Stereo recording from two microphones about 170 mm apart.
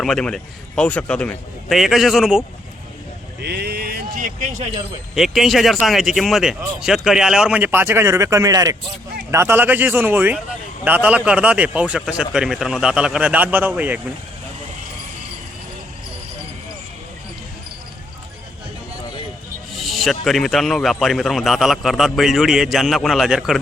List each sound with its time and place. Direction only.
0.0 s speech: 5° left (ahead or behind)
3.4 s a sound: 70° right (ahead or behind); by 4.7 s 45° right (ahead or behind)
5.1 s a man's voice: centre (ahead or behind)
19.7 s speech: centre (ahead or behind)